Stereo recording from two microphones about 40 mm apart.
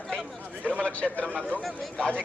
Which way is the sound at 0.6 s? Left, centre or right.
Left.